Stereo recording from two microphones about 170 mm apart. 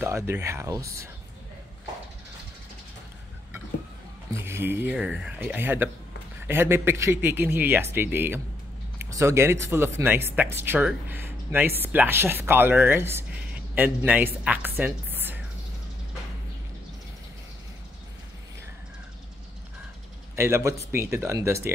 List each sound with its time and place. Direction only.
0.0 s speech: 15° right (ahead or behind)
4.3 s a woman's voice: 15° right (ahead or behind)
20.3 s speech: 15° right (ahead or behind)